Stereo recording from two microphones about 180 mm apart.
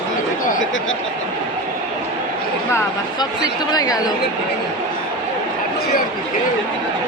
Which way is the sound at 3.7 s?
20° left (ahead or behind).